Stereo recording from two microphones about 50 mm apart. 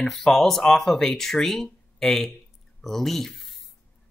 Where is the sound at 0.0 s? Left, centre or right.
Centre.